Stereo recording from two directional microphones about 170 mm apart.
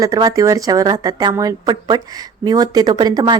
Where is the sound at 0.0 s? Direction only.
20° right (ahead or behind).